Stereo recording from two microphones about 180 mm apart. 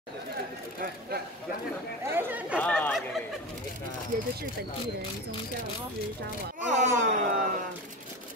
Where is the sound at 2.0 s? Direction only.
10° right (ahead or behind).